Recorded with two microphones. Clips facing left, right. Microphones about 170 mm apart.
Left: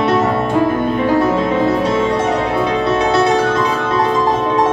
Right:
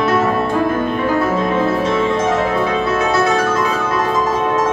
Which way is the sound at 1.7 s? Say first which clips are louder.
Left 1 dB; 35° left (ahead or behind).